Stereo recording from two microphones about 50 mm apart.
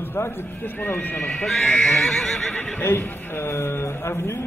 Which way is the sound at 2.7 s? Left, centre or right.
Left.